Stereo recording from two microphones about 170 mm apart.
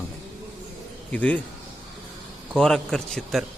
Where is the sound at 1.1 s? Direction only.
10° left (ahead or behind).